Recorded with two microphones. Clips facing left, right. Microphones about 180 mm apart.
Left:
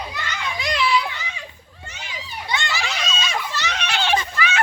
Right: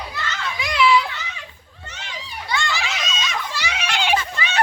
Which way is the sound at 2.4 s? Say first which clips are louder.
Right 1 dB; 20° left (ahead or behind).